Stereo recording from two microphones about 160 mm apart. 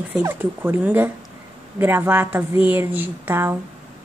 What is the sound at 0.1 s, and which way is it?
A woman's voice, 15° right (ahead or behind).